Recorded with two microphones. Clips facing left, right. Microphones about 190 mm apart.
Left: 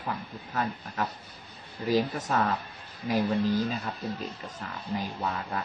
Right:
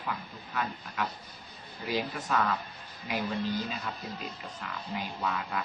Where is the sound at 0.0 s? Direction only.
40° left (ahead or behind).